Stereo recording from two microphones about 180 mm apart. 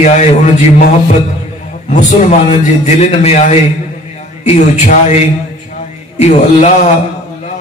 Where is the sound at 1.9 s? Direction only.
40° left (ahead or behind).